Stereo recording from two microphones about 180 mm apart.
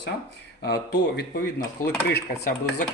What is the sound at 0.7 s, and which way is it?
Speech, 65° left (ahead or behind).